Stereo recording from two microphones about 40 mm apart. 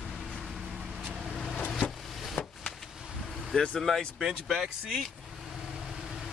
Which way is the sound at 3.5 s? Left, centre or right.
Left.